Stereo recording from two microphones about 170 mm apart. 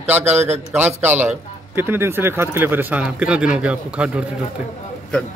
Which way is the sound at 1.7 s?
15° right (ahead or behind).